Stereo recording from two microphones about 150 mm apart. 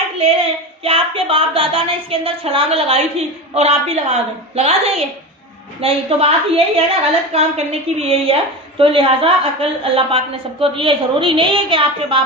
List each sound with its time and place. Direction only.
0.9 s a woman's voice: 40° right (ahead or behind)